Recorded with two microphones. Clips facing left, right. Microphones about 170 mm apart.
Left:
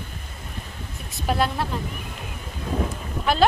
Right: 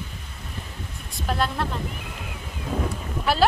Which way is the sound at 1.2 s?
5° left (ahead or behind).